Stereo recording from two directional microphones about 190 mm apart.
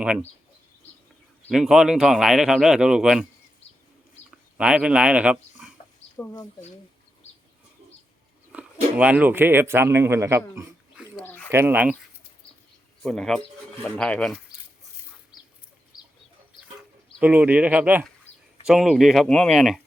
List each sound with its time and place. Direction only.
1.5 s speech: 5° right (ahead or behind)
4.5 s speech: 5° right (ahead or behind)
6.1 s speech: 20° left (ahead or behind)
8.5 s speech: 5° right (ahead or behind)
10.5 s pig: 15° right (ahead or behind)
11.2 s bird: 10° left (ahead or behind)
11.5 s speech: 10° right (ahead or behind)
13.0 s speech: centre (ahead or behind)
15.3 s chicken: 20° left (ahead or behind)
17.2 s speech: 10° right (ahead or behind)